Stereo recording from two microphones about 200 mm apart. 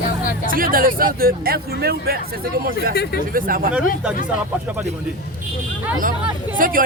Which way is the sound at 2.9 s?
55° left (ahead or behind).